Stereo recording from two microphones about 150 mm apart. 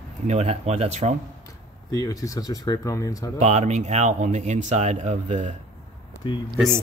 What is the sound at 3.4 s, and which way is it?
Speech, 50° right (ahead or behind).